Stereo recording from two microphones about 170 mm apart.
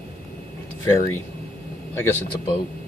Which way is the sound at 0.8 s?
20° left (ahead or behind).